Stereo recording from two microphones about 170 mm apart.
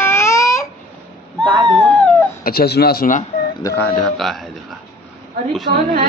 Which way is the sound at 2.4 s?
65° left (ahead or behind).